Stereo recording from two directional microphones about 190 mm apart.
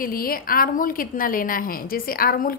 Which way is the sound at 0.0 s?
50° left (ahead or behind).